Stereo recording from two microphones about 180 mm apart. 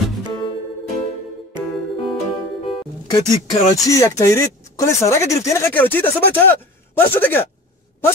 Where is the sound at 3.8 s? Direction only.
20° left (ahead or behind).